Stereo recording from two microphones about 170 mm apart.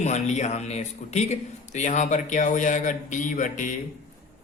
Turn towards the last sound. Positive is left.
turn(degrees=50)  # may be behind; listen again after turning